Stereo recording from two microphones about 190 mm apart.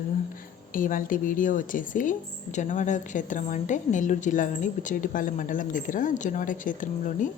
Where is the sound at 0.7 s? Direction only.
45° left (ahead or behind).